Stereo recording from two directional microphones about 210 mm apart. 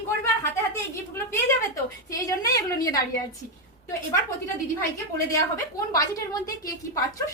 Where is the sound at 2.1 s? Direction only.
15° left (ahead or behind).